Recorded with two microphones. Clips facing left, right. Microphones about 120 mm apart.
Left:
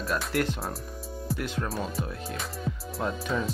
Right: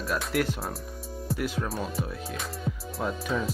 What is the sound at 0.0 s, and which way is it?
Speech, centre (ahead or behind).